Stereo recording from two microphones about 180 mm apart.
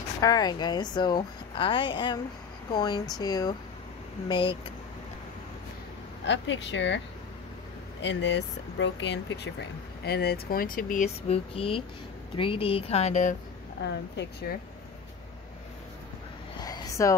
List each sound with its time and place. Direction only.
0.2 s a woman's voice: 20° left (ahead or behind)
6.2 s speech: 85° left
8.0 s speech: 80° left; by 13.4 s 45° left (ahead or behind)
13.7 s a woman's voice: 70° left (ahead or behind)
16.5 s a sound: 20° left (ahead or behind)